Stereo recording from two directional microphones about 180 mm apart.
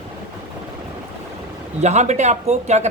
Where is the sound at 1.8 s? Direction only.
40° right (ahead or behind).